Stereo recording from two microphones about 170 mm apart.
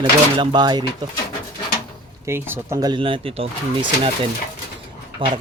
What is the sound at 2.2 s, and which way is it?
Speech, 15° right (ahead or behind).